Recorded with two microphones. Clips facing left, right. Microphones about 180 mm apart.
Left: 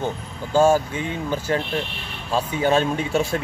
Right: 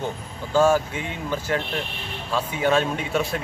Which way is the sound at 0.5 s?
30° left (ahead or behind).